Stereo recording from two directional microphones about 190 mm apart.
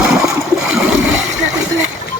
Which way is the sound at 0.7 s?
5° right (ahead or behind).